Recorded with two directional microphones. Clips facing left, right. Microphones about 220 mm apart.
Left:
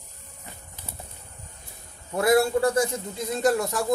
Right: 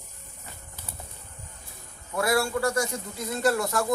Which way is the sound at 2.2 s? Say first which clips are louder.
Left 5 dB; 20° left (ahead or behind).